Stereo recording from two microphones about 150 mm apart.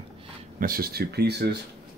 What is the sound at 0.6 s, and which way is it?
Speech, 80° right.